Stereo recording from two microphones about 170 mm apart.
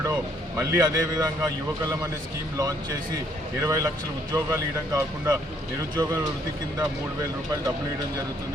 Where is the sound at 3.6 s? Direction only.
15° right (ahead or behind).